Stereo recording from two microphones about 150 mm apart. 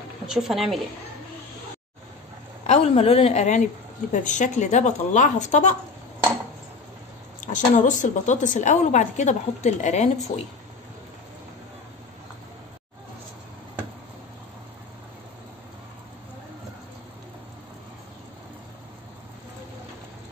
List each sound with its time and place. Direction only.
0.3 s speech: centre (ahead or behind)
2.6 s a woman's voice: 45° left (ahead or behind)
7.3 s a woman's voice: 60° left (ahead or behind)